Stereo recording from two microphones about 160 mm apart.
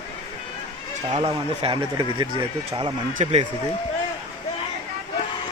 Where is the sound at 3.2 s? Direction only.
45° right (ahead or behind).